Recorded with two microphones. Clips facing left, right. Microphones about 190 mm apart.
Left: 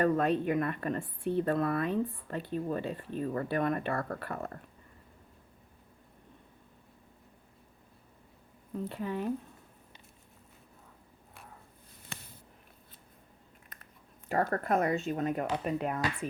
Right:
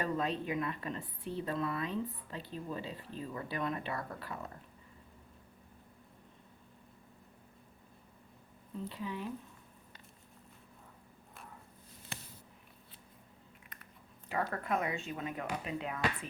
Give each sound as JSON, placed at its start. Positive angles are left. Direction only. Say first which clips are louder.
{"t": 0.0, "sound": "a woman's voice", "louder": "left 8 dB", "side_deg": 55}
{"t": 8.7, "sound": "speech", "louder": "left 5 dB", "side_deg": 55}
{"t": 14.3, "sound": "speech", "louder": "left 6 dB", "side_deg": 45}